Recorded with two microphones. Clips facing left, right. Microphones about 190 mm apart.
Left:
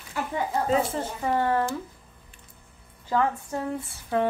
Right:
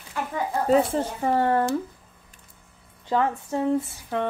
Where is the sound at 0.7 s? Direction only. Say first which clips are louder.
Right 8 dB; 35° right (ahead or behind).